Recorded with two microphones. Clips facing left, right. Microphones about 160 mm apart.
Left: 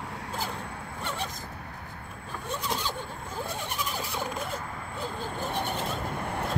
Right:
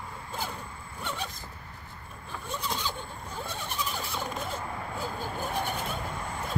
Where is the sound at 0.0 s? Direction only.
75° left (ahead or behind).